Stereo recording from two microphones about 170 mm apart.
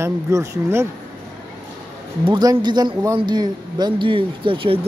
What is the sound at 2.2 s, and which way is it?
Speech, 25° right (ahead or behind).